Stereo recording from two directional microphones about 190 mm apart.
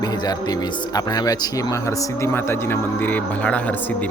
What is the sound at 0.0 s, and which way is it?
Speech, 20° left (ahead or behind).